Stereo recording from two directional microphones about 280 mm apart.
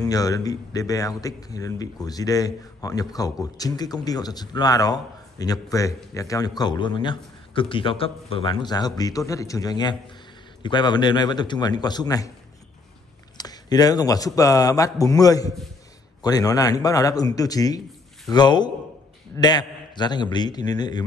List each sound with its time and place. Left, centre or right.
0.0 s a man's voice: centre
13.4 s a man's voice: centre